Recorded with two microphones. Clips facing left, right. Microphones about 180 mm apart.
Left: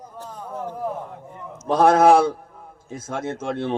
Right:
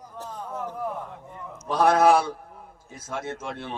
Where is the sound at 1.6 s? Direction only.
50° left (ahead or behind).